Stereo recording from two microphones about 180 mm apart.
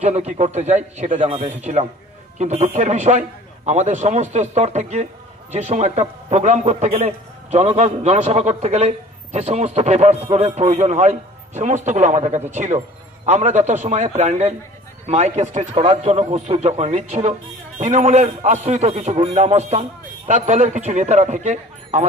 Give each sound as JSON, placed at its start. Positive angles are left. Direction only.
{"t": 0.0, "sound": "a man's voice", "side_deg": -40}